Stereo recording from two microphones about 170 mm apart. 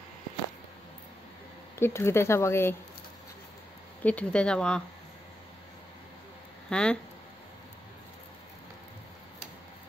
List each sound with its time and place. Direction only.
1.8 s speech: 15° left (ahead or behind)
4.0 s speech: 10° left (ahead or behind)
6.7 s speech: 5° left (ahead or behind)